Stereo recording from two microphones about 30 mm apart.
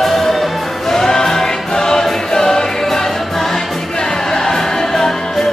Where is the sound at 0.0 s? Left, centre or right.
Centre.